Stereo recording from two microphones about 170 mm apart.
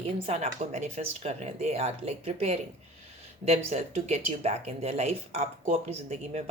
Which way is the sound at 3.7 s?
40° right (ahead or behind).